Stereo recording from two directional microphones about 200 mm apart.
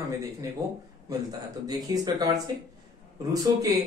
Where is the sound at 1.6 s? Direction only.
20° right (ahead or behind).